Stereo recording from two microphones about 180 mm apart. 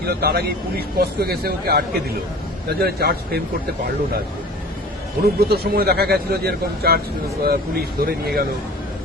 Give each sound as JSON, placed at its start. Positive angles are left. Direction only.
{"t": 0.1, "sound": "speech", "side_deg": -60}
{"t": 5.4, "sound": "speech", "side_deg": -60}